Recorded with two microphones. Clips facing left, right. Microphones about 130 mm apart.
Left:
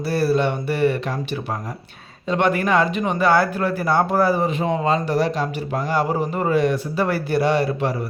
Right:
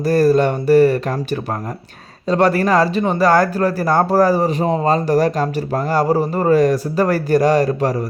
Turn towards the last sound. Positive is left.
turn(degrees=-40)  # may be behind; listen again after turning